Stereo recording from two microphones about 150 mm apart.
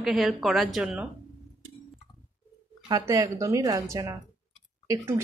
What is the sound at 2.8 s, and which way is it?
A woman's voice, 25° right (ahead or behind).